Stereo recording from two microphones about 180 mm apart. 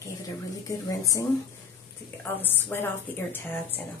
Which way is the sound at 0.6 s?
20° left (ahead or behind).